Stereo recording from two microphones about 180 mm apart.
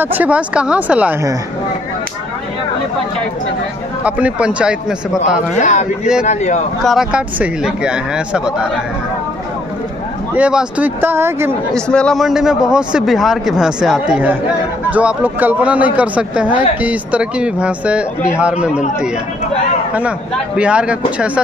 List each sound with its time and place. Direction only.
0.0 s a man's voice: 10° right (ahead or behind)
4.0 s a man's voice: 5° right (ahead or behind)
5.6 s speech: 45° left (ahead or behind)
6.8 s a man's voice: centre (ahead or behind)
10.3 s a man's voice: 5° right (ahead or behind)
11.7 s a man's voice: 5° left (ahead or behind)
19.9 s a man's voice: 5° right (ahead or behind)